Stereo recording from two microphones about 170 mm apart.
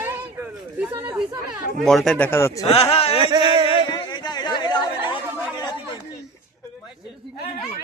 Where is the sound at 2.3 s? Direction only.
15° left (ahead or behind).